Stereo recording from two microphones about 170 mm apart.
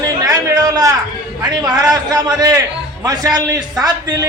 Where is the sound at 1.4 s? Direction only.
25° right (ahead or behind).